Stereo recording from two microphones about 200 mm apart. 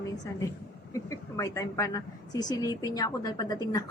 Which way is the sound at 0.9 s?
15° left (ahead or behind).